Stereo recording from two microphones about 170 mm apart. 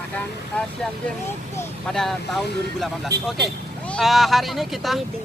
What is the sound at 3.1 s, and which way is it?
Speech, 70° right (ahead or behind).